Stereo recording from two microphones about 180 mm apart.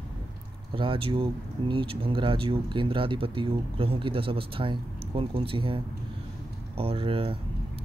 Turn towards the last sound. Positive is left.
turn(degrees=-30)  # may be behind; listen again after turning